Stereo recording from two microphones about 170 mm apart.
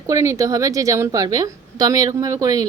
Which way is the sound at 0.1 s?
20° right (ahead or behind).